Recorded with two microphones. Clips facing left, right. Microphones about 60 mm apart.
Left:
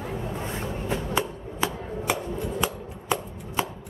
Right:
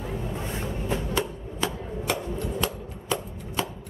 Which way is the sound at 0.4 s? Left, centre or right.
Left.